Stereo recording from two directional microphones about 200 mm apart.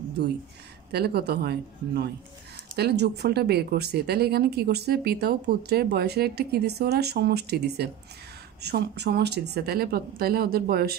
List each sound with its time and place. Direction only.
0.9 s speech: 55° right (ahead or behind)